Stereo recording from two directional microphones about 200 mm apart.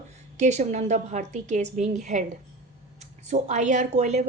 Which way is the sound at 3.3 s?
35° right (ahead or behind).